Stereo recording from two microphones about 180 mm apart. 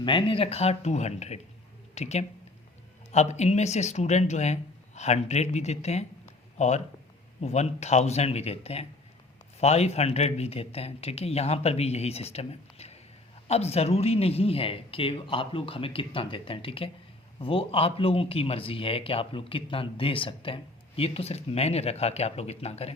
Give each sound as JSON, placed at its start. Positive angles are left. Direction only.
{"t": 0.0, "sound": "a man's voice", "side_deg": 25}